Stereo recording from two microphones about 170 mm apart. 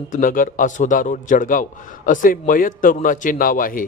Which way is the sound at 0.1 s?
55° left (ahead or behind).